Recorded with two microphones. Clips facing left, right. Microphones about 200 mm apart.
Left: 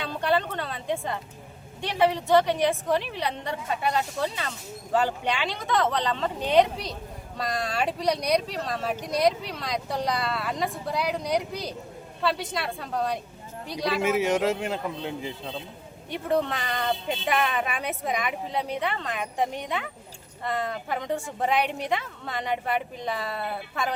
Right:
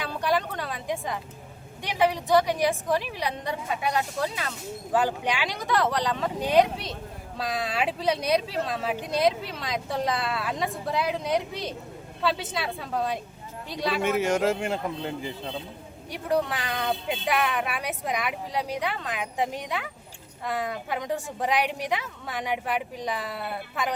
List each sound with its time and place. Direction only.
0.2 s a sound: 10° right (ahead or behind)
1.8 s a woman's voice: 15° right (ahead or behind)
22.3 s speech: 10° right (ahead or behind)